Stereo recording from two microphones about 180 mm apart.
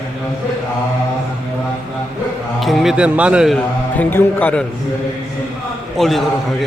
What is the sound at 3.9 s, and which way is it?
Speech, 10° left (ahead or behind).